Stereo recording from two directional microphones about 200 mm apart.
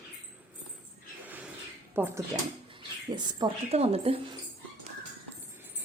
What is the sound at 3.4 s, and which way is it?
Speech, 30° right (ahead or behind).